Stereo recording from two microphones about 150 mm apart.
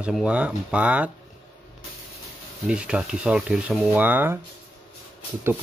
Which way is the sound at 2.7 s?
5° right (ahead or behind).